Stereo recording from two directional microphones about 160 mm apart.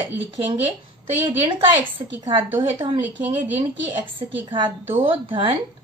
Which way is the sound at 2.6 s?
30° right (ahead or behind).